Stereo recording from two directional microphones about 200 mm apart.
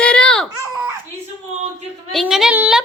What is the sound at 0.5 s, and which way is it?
Speech, 15° right (ahead or behind).